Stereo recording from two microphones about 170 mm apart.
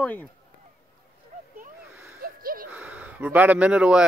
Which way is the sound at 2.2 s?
55° right (ahead or behind).